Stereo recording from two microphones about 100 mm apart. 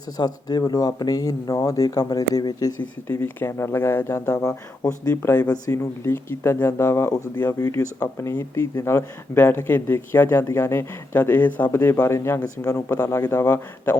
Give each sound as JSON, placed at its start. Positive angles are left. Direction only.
{"t": 0.2, "sound": "speech", "side_deg": 40}
{"t": 3.1, "sound": "speech", "side_deg": 20}